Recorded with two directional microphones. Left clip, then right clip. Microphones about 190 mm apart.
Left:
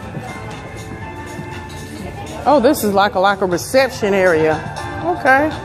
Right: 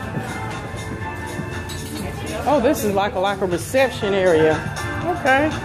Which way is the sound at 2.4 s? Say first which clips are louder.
Left 5 dB; 35° left (ahead or behind).